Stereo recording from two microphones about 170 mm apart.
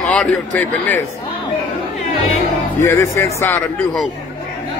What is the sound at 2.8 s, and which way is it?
Speech, 15° left (ahead or behind).